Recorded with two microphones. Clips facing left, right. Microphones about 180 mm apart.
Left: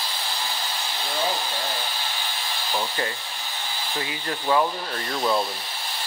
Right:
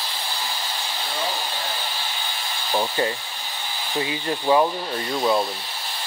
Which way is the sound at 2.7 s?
25° right (ahead or behind).